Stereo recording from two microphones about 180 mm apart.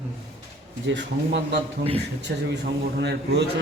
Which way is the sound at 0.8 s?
80° right.